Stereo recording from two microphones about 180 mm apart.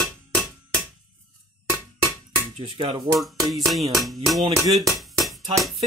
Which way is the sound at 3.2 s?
Centre (ahead or behind).